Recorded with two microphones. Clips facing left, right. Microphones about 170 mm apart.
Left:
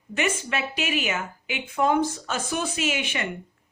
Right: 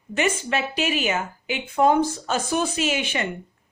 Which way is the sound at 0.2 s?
30° right (ahead or behind).